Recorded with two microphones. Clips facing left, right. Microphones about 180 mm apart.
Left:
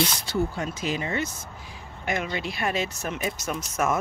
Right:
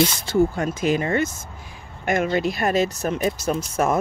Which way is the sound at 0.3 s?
50° right (ahead or behind).